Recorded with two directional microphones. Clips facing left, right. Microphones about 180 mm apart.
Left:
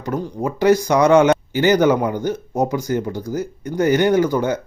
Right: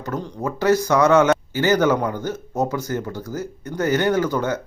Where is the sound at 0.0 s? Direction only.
10° left (ahead or behind).